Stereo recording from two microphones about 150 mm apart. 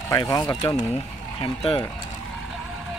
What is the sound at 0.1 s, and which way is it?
Speech, 25° left (ahead or behind).